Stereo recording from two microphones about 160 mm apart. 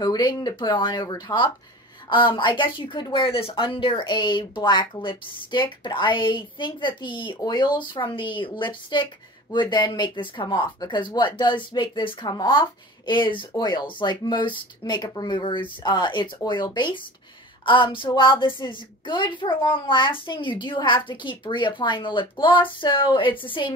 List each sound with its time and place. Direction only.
0.0 s a woman's voice: 25° left (ahead or behind)